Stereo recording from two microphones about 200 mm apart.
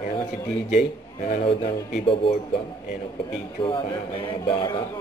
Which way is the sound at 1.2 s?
30° left (ahead or behind).